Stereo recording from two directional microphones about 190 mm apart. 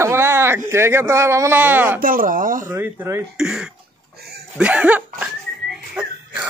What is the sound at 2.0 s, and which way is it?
Speech, 45° right (ahead or behind).